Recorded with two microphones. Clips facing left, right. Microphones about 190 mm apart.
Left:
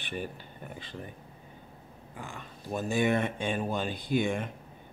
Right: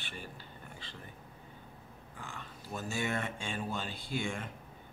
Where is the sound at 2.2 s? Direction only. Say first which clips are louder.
Left 5 dB; 15° left (ahead or behind).